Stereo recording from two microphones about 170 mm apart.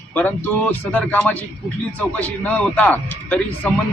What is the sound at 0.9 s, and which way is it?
Speech, 10° left (ahead or behind).